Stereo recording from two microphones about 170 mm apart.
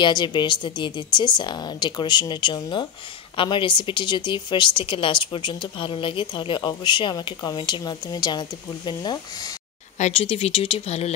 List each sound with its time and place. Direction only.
0.0 s a woman's voice: 25° left (ahead or behind)
9.9 s speech: 40° left (ahead or behind)